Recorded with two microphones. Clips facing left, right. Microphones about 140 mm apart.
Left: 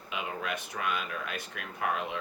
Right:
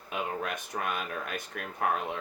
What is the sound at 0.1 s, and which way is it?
Speech, 45° right (ahead or behind).